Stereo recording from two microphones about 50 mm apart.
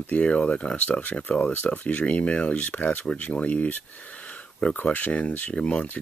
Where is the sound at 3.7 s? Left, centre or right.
Left.